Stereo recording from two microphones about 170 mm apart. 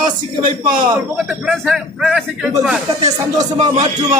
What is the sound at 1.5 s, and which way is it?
Speech, 5° right (ahead or behind).